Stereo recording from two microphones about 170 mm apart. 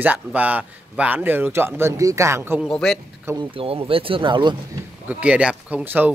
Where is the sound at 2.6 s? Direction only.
5° left (ahead or behind).